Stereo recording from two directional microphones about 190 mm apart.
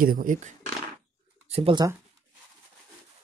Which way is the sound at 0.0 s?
45° right (ahead or behind).